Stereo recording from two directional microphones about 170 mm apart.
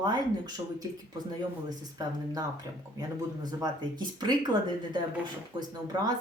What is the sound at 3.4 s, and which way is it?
Speech, 25° right (ahead or behind).